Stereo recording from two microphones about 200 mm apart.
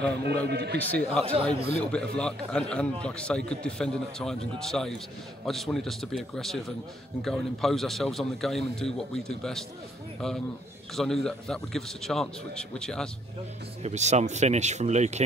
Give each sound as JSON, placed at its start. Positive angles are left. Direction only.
{"t": 0.2, "sound": "a man's voice", "side_deg": -55}
{"t": 0.7, "sound": "speech", "side_deg": 5}
{"t": 1.2, "sound": "speech", "side_deg": -30}
{"t": 1.8, "sound": "a man's voice", "side_deg": 5}
{"t": 13.8, "sound": "speech", "side_deg": -35}